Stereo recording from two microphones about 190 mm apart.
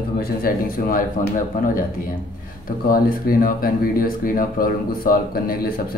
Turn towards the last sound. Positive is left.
turn(degrees=50)  # may be behind; listen again after turning